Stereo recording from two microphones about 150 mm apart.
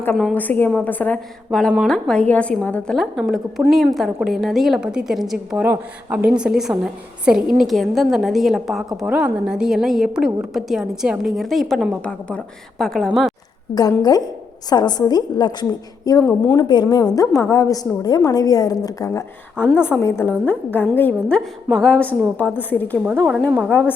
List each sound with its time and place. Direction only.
0.3 s a woman's voice: 10° left (ahead or behind)
1.5 s a woman's voice: centre (ahead or behind)
13.7 s a woman's voice: 25° left (ahead or behind)